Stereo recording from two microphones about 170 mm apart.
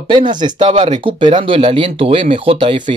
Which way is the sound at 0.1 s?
25° right (ahead or behind).